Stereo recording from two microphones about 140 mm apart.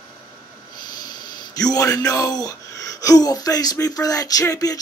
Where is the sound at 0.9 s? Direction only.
30° left (ahead or behind).